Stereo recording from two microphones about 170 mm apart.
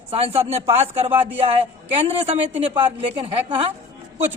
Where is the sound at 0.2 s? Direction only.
35° right (ahead or behind).